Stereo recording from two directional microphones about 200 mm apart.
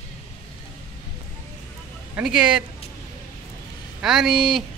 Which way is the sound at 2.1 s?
5° right (ahead or behind).